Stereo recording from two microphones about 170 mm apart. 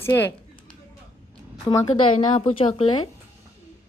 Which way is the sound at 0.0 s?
10° left (ahead or behind).